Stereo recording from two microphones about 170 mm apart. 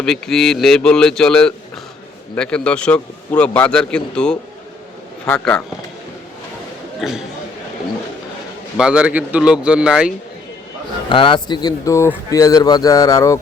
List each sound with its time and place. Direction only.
0.0 s a man's voice: 5° left (ahead or behind)
7.0 s a man's voice: centre (ahead or behind)
8.8 s a man's voice: 5° right (ahead or behind)
11.1 s speech: 30° left (ahead or behind)